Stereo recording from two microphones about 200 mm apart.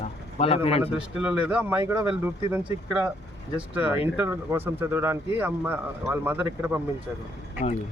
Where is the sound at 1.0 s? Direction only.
5° right (ahead or behind).